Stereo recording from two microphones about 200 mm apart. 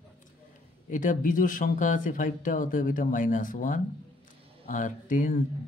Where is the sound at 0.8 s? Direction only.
40° left (ahead or behind).